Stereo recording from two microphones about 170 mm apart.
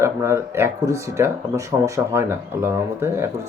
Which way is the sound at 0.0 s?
15° right (ahead or behind).